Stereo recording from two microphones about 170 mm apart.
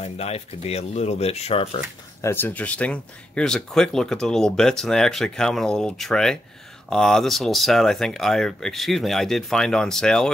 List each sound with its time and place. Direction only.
0.0 s speech: 35° left (ahead or behind)
2.2 s speech: 10° left (ahead or behind)